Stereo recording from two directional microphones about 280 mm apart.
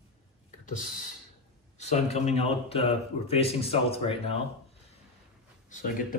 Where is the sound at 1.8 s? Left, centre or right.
Left.